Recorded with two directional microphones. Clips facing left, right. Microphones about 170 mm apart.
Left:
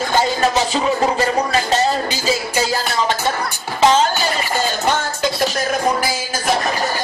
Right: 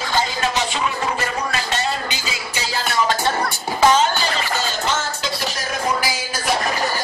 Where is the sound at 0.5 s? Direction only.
35° left (ahead or behind).